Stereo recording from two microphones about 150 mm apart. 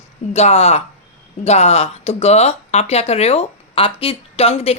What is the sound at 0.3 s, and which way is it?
A woman's voice, 45° left (ahead or behind).